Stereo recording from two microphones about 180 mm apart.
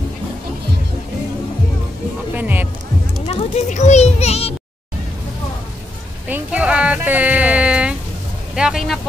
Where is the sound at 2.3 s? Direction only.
10° right (ahead or behind).